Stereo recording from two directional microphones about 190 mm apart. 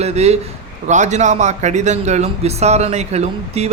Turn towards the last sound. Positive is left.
turn(degrees=-35)  # may be behind; listen again after turning